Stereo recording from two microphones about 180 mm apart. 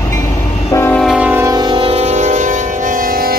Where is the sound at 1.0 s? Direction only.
5° right (ahead or behind).